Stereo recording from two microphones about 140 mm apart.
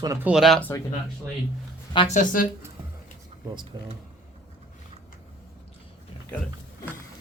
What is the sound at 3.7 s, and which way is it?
Speech, 30° right (ahead or behind).